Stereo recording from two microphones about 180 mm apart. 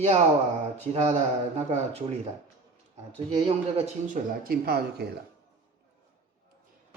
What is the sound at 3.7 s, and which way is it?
Speech, 50° right (ahead or behind).